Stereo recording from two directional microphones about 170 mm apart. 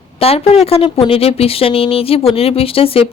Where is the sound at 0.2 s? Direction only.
35° left (ahead or behind).